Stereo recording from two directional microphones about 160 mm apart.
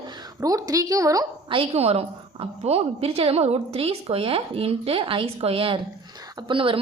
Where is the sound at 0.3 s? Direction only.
20° right (ahead or behind).